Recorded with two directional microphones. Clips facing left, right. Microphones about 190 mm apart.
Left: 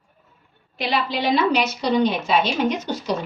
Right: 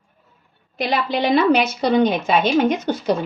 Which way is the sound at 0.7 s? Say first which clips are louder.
Right 3 dB; 50° right (ahead or behind).